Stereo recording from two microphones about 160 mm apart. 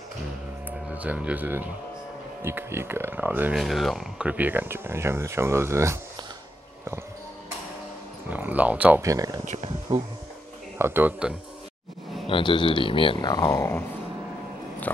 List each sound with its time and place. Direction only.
0.7 s speech: 10° right (ahead or behind)
3.5 s speech: centre (ahead or behind); by 5.9 s 15° right (ahead or behind)
8.3 s speech: 10° right (ahead or behind)
9.0 s speech: 20° right (ahead or behind)
9.4 s speech: 45° right (ahead or behind)
9.9 s speech: 30° right (ahead or behind)
10.8 s speech: 15° right (ahead or behind)
12.3 s speech: 30° left (ahead or behind); by 13.8 s 15° left (ahead or behind)